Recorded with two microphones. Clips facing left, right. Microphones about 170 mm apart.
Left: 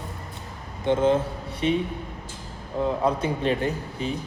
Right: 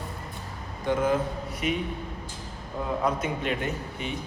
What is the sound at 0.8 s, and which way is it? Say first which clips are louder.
Speech: left 4 dB; 25° left (ahead or behind).